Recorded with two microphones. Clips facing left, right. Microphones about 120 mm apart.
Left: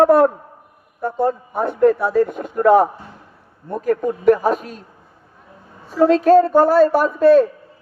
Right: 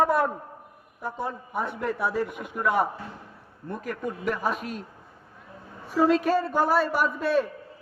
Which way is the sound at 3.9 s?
40° left (ahead or behind).